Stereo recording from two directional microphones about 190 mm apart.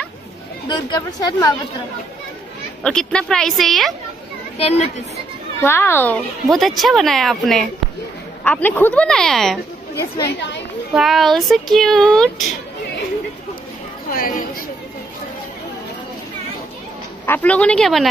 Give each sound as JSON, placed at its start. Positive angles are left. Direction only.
{"t": 0.7, "sound": "a woman's voice", "side_deg": 20}
{"t": 2.8, "sound": "speech", "side_deg": 5}
{"t": 5.6, "sound": "a child's voice", "side_deg": 10}
{"t": 6.4, "sound": "speech", "side_deg": 0}
{"t": 9.9, "sound": "a child's voice", "side_deg": 15}
{"t": 11.0, "sound": "speech", "side_deg": 0}
{"t": 14.1, "sound": "speech", "side_deg": 50}
{"t": 17.3, "sound": "speech", "side_deg": 10}